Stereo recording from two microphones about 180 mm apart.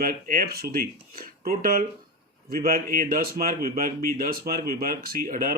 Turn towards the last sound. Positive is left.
turn(degrees=-45)  # may be behind; listen again after turning